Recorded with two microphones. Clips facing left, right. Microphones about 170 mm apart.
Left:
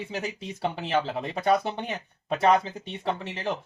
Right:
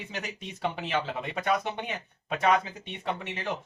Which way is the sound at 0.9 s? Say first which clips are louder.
Left 4 dB; 35° left (ahead or behind).